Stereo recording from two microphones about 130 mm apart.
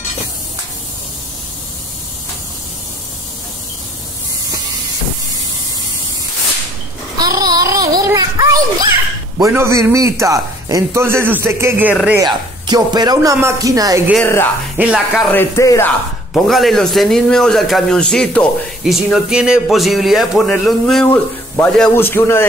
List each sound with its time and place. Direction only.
7.2 s a sound: 30° right (ahead or behind)
9.4 s a man's voice: 20° right (ahead or behind)
12.2 s a man's voice: 30° right (ahead or behind)
14.8 s speech: 10° right (ahead or behind)
15.3 s speech: 25° left (ahead or behind)
16.3 s speech: centre (ahead or behind); by 22.5 s 20° left (ahead or behind)